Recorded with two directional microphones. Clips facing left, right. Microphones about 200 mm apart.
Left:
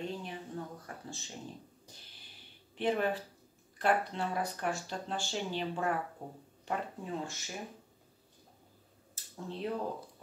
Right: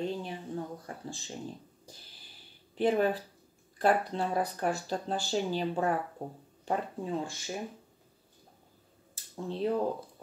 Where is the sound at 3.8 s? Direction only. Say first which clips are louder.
Right 4 dB; 40° right (ahead or behind).